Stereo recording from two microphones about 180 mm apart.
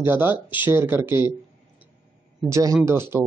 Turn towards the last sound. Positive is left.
turn(degrees=-15)  # may be behind; listen again after turning